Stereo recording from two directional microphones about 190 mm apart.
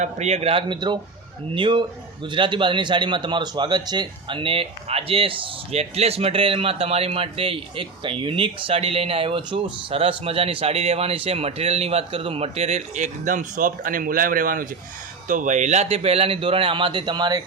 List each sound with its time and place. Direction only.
0.0 s a man's voice: 35° right (ahead or behind)